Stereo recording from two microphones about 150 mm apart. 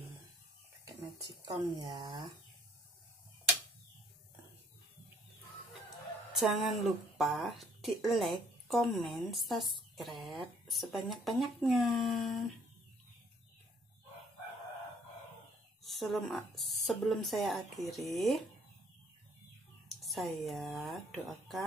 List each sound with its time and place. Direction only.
0.8 s speech: 25° right (ahead or behind)
6.3 s a woman's voice: centre (ahead or behind)
15.8 s a woman's voice: centre (ahead or behind)
20.0 s a woman's voice: centre (ahead or behind)